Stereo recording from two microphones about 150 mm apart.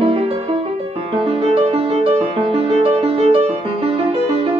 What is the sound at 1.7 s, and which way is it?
Music, 40° right (ahead or behind).